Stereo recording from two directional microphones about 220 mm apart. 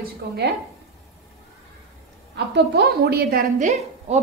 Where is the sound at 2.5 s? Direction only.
45° right (ahead or behind).